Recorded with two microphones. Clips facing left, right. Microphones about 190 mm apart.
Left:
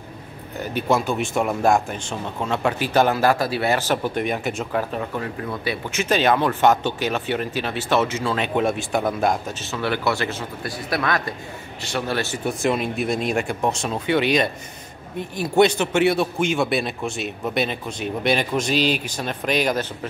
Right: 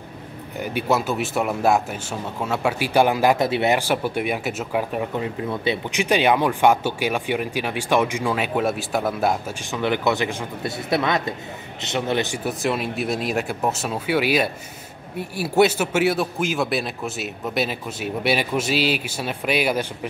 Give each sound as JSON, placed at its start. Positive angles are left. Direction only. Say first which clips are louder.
{"t": 0.6, "sound": "speech", "louder": "left 1 dB", "side_deg": -10}
{"t": 8.5, "sound": "speech", "louder": "left 1 dB", "side_deg": 0}
{"t": 12.4, "sound": "speech", "louder": "left 2 dB", "side_deg": -5}